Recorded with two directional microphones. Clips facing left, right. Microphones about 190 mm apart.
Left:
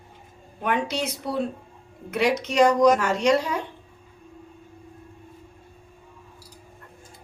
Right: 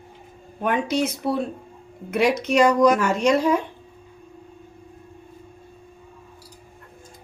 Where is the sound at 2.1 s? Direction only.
55° right (ahead or behind).